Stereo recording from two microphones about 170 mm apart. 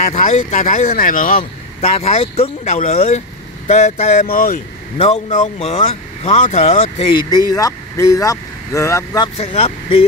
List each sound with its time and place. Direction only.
0.0 s speech: 40° left (ahead or behind)
1.4 s speech: 40° left (ahead or behind); by 4.6 s 55° left (ahead or behind)
4.9 s speech: 40° left (ahead or behind)
7.2 s speech: 20° left (ahead or behind)
9.4 s speech: 35° left (ahead or behind)